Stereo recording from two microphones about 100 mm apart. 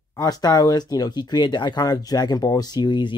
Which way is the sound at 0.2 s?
40° left (ahead or behind).